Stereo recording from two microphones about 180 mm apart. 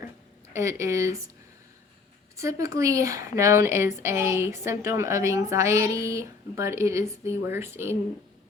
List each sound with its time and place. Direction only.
0.5 s speech: 15° right (ahead or behind)
2.3 s speech: 15° right (ahead or behind)